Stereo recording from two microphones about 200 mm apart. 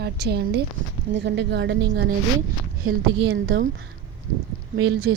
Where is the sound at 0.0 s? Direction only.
55° right (ahead or behind).